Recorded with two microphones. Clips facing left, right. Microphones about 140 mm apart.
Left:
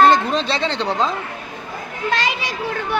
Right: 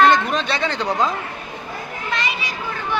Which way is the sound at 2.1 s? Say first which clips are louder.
Left 4 dB; 90° left.